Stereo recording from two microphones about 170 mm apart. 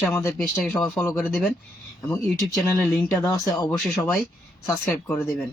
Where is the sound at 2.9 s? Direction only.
20° left (ahead or behind).